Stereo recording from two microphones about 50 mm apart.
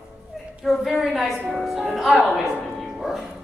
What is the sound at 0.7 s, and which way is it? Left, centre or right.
A woman's voice, centre.